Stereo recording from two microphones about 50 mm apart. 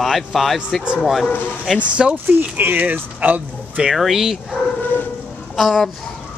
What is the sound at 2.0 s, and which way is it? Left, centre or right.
Speech, centre.